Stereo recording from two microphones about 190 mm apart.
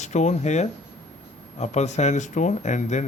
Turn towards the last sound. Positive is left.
turn(degrees=40)  # may be behind; listen again after turning